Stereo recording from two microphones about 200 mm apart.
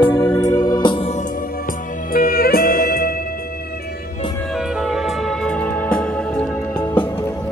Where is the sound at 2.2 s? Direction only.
45° left (ahead or behind).